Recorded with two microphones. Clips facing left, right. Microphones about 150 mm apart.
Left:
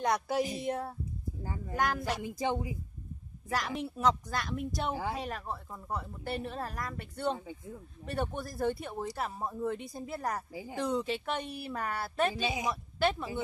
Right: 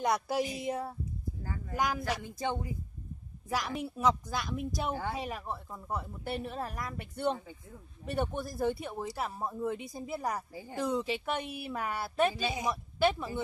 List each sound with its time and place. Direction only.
0.0 s speech: 5° right (ahead or behind)
1.4 s speech: 20° left (ahead or behind)
1.8 s speech: centre (ahead or behind)
2.1 s speech: 10° left (ahead or behind)
3.4 s speech: 5° right (ahead or behind)
10.5 s speech: 10° left (ahead or behind)
10.8 s speech: 5° right (ahead or behind)